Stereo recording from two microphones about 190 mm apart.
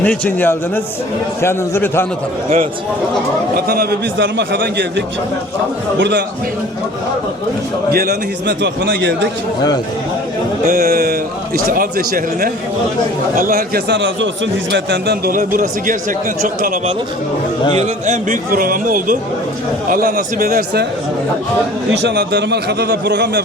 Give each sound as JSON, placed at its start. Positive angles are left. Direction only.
{"t": 0.0, "sound": "a man's voice", "side_deg": 10}
{"t": 3.5, "sound": "a man's voice", "side_deg": -55}
{"t": 7.9, "sound": "a man's voice", "side_deg": -55}
{"t": 10.7, "sound": "a man's voice", "side_deg": -50}
{"t": 22.0, "sound": "a man's voice", "side_deg": -60}